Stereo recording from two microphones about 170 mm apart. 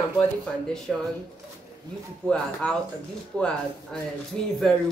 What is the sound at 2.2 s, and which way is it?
A man's voice, 5° left (ahead or behind).